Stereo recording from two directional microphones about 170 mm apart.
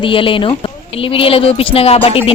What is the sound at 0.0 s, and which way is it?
A woman's voice, 30° left (ahead or behind).